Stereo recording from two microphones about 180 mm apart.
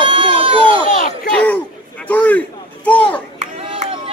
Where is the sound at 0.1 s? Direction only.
30° right (ahead or behind).